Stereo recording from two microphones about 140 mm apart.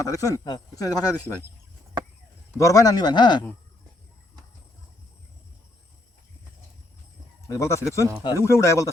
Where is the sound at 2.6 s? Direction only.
25° left (ahead or behind).